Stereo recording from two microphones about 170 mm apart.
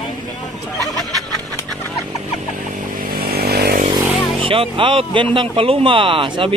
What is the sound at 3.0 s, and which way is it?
Vehicle, 65° right (ahead or behind).